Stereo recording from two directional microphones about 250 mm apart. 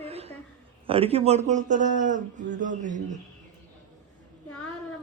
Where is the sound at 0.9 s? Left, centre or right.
Right.